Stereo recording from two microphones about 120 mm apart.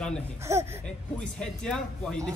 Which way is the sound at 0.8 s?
10° left (ahead or behind).